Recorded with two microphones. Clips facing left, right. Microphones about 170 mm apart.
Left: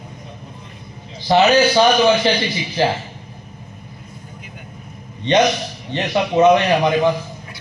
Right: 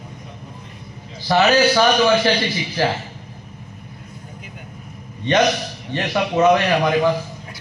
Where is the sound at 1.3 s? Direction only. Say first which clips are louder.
Left 2 dB; 20° left (ahead or behind).